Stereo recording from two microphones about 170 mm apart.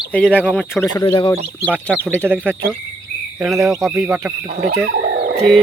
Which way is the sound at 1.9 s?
10° right (ahead or behind).